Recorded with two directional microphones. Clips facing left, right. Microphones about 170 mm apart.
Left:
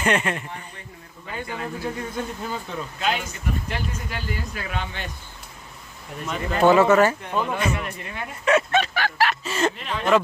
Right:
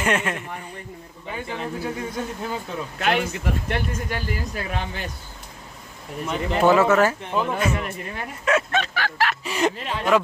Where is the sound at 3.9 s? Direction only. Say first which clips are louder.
Right 3 dB; 40° right (ahead or behind).